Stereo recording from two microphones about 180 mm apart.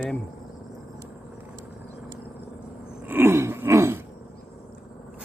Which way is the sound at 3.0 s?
10° right (ahead or behind).